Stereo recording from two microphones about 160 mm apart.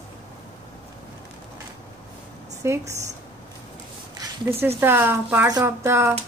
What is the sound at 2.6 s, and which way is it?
Speech, 20° right (ahead or behind).